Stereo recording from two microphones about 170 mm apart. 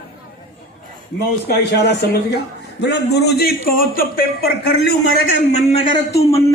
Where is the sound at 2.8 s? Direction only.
85° left; by 4.8 s 70° left (ahead or behind).